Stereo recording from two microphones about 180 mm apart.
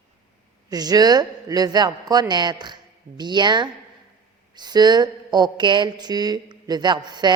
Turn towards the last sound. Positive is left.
turn(degrees=-25)  # may be behind; listen again after turning